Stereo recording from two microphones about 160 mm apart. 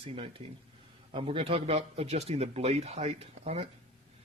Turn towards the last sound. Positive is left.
turn(degrees=-40)  # may be behind; listen again after turning